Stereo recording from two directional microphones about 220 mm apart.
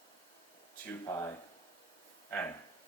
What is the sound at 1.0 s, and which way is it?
Speech, 15° left (ahead or behind).